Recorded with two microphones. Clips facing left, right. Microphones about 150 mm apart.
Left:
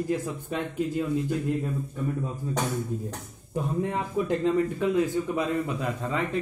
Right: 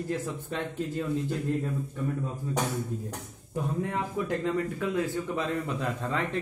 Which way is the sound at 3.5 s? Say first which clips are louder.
Left 3 dB; 20° left (ahead or behind).